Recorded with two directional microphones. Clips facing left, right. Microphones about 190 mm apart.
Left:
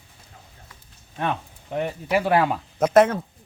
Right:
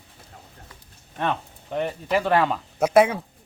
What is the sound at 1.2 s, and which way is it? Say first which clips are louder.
Speech: even; 10° left (ahead or behind).